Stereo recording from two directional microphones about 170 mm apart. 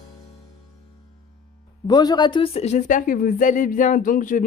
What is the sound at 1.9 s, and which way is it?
Speech, 25° left (ahead or behind).